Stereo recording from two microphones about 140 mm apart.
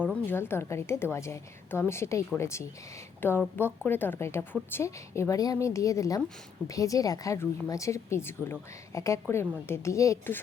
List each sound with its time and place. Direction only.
0.0 s a woman's voice: 15° left (ahead or behind)